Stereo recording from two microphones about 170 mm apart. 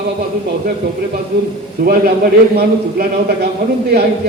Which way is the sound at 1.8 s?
60° right (ahead or behind).